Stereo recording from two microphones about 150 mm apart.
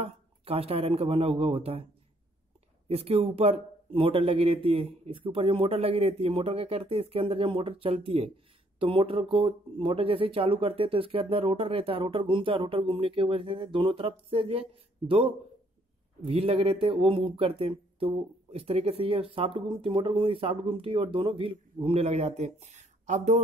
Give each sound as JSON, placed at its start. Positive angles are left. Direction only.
{"t": 0.0, "sound": "speech", "side_deg": -40}
{"t": 2.9, "sound": "speech", "side_deg": -40}